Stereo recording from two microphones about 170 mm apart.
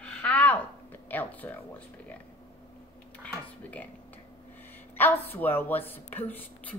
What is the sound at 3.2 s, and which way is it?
Computer keyboard, 10° left (ahead or behind).